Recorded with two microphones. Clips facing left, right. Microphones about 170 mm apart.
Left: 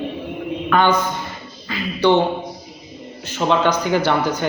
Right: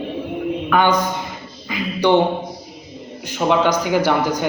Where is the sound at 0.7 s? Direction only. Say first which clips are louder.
Even; 10° right (ahead or behind).